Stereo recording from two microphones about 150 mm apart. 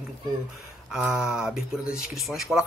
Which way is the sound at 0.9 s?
5° right (ahead or behind).